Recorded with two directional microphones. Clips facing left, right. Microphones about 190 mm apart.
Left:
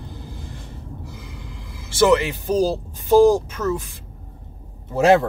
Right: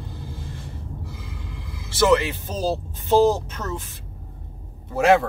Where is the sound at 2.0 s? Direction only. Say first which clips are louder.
Left 2 dB; 20° left (ahead or behind).